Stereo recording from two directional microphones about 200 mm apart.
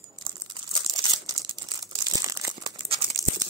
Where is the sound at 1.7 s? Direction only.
20° right (ahead or behind).